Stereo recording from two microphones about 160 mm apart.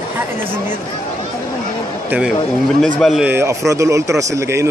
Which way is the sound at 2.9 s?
Centre (ahead or behind).